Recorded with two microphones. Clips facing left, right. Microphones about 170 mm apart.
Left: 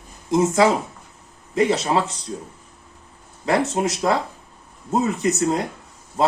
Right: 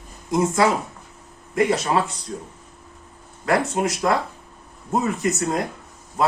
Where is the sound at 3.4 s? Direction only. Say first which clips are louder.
Left 1 dB; 25° left (ahead or behind).